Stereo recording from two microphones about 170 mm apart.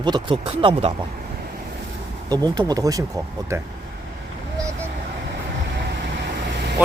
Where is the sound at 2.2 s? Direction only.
25° right (ahead or behind).